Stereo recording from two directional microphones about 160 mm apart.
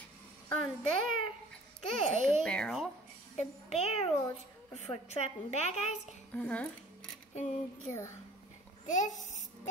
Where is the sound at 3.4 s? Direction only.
45° left (ahead or behind).